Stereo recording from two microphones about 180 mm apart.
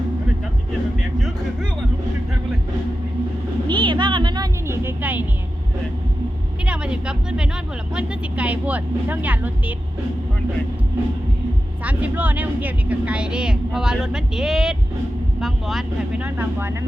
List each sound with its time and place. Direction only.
3.7 s a sound: 25° right (ahead or behind); by 5.2 s 10° right (ahead or behind)
6.7 s speech: 5° right (ahead or behind)
11.8 s a woman's voice: 10° right (ahead or behind)